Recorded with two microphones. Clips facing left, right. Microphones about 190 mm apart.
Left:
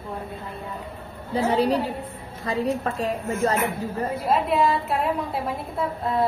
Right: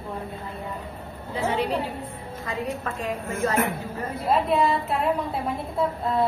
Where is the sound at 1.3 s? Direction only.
35° left (ahead or behind).